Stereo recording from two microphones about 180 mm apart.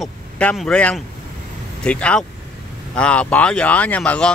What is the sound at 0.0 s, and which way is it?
Speech, 5° left (ahead or behind).